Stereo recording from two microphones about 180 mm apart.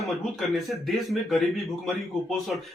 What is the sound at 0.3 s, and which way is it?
Speech, centre (ahead or behind).